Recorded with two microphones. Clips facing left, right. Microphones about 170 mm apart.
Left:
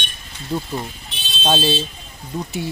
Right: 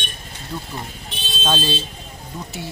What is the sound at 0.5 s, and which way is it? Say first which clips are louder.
Speech: left 7 dB; 30° left (ahead or behind).